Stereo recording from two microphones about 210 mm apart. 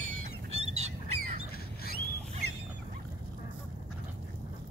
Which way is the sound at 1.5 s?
45° left (ahead or behind).